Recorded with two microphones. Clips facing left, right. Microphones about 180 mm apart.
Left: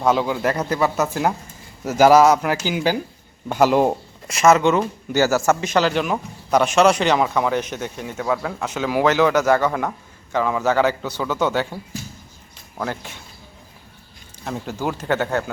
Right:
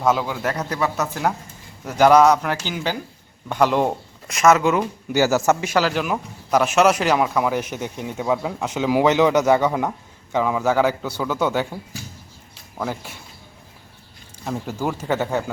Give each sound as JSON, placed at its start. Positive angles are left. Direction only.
{"t": 0.0, "sound": "a man's voice", "side_deg": 0}
{"t": 12.7, "sound": "speech", "side_deg": -5}
{"t": 14.4, "sound": "speech", "side_deg": -5}